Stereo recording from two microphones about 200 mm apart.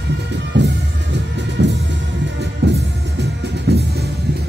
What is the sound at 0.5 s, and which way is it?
Music, 60° right (ahead or behind).